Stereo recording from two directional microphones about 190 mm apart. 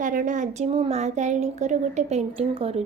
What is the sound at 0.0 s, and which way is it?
A woman's voice, 45° right (ahead or behind).